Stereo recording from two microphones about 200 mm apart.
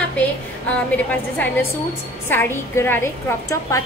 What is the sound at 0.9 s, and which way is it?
A woman's voice, 10° left (ahead or behind).